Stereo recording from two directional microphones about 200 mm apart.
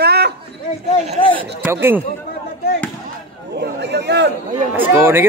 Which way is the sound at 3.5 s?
55° right (ahead or behind).